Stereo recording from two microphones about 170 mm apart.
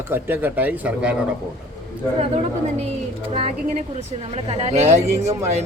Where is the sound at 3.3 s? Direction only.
40° right (ahead or behind).